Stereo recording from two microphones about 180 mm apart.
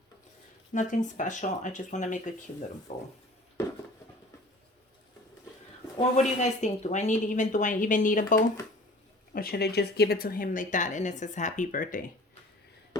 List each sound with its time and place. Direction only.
0.7 s speech: 40° left (ahead or behind)
6.0 s speech: 40° left (ahead or behind)